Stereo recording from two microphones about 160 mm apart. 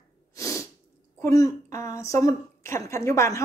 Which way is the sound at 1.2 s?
20° left (ahead or behind).